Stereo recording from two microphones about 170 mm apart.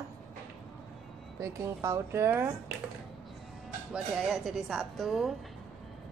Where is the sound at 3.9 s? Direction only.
5° right (ahead or behind).